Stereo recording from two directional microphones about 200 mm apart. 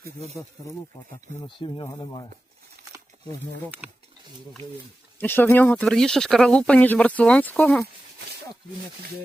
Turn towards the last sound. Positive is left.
turn(degrees=5)  # may be behind; listen again after turning